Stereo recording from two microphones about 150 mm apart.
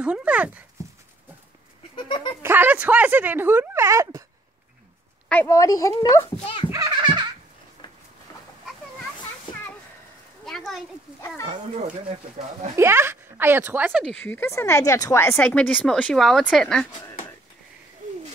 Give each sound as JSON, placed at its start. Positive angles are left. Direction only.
{"t": 0.0, "sound": "speech", "side_deg": -5}
{"t": 2.0, "sound": "a sound", "side_deg": 30}
{"t": 2.4, "sound": "speech", "side_deg": -10}
{"t": 5.3, "sound": "speech", "side_deg": 15}
{"t": 6.7, "sound": "music", "side_deg": -25}
{"t": 10.4, "sound": "a sound", "side_deg": 5}
{"t": 11.9, "sound": "speech", "side_deg": -50}
{"t": 12.7, "sound": "speech", "side_deg": -15}
{"t": 14.0, "sound": "speech", "side_deg": 10}
{"t": 15.3, "sound": "speech", "side_deg": 10}
{"t": 18.0, "sound": "a sound", "side_deg": -60}